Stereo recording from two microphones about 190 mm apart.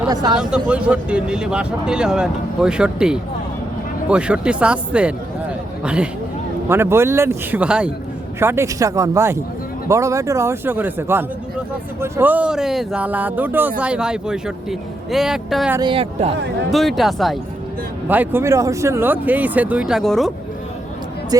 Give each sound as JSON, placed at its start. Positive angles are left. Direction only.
{"t": 0.1, "sound": "speech", "side_deg": -20}
{"t": 0.3, "sound": "speech", "side_deg": -5}
{"t": 15.8, "sound": "speech", "side_deg": -30}
{"t": 16.7, "sound": "speech", "side_deg": 0}